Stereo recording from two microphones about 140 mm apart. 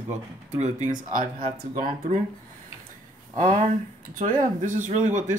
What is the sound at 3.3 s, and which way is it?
Speech, 70° right (ahead or behind).